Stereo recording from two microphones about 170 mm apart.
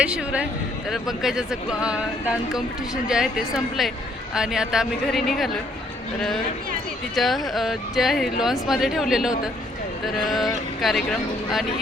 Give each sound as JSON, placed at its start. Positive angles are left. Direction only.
{"t": 0.0, "sound": "a man's voice", "side_deg": -5}
{"t": 7.2, "sound": "speech", "side_deg": 0}